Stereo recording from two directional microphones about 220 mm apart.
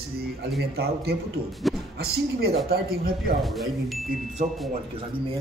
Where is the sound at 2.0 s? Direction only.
45° right (ahead or behind).